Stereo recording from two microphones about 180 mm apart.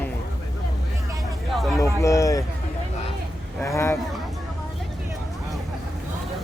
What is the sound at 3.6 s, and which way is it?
Speech, 15° left (ahead or behind).